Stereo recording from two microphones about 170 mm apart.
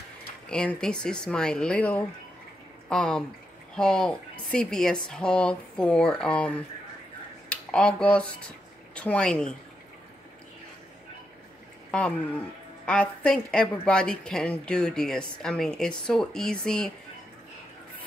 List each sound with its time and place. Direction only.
0.5 s speech: 5° left (ahead or behind)
12.8 s speech: 5° left (ahead or behind)